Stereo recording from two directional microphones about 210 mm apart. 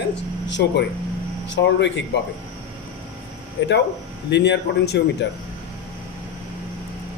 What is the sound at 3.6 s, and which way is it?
A man's voice, 55° left (ahead or behind).